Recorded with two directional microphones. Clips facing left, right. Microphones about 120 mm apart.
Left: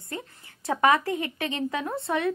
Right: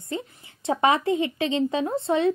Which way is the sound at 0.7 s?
25° right (ahead or behind).